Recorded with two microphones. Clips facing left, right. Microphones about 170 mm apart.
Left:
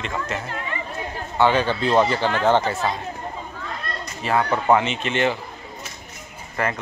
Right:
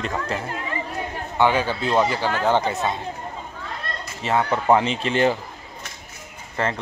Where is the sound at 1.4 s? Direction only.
10° right (ahead or behind).